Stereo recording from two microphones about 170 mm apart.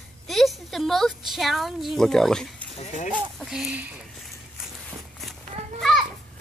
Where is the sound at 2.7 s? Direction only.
45° left (ahead or behind).